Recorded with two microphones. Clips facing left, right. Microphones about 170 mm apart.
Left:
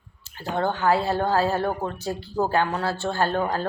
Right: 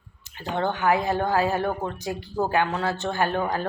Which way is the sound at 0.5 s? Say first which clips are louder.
Left 1 dB; 15° right (ahead or behind).